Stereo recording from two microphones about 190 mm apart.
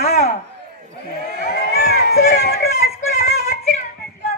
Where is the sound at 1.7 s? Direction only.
55° left (ahead or behind).